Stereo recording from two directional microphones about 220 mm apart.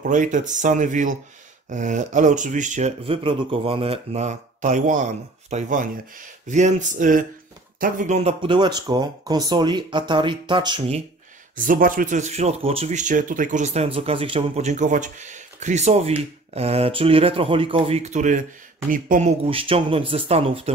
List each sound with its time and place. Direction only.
0.0 s speech: 35° right (ahead or behind); by 11.0 s 20° right (ahead or behind)
11.5 s speech: 40° right (ahead or behind)